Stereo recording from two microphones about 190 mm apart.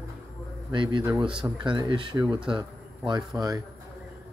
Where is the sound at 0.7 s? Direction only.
25° right (ahead or behind).